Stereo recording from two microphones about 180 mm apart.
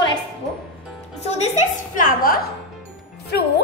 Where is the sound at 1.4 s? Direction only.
45° left (ahead or behind).